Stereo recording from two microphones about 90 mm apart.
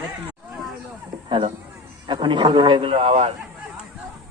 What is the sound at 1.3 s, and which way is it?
Speech, 80° right.